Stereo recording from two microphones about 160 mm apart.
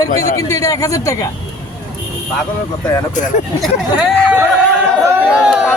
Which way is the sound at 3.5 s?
Centre (ahead or behind).